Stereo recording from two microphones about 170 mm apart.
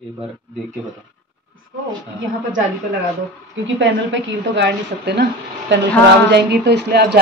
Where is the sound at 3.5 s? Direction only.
90° right.